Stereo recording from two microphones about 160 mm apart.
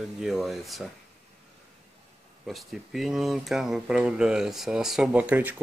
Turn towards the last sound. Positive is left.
turn(degrees=-10)  # may be behind; listen again after turning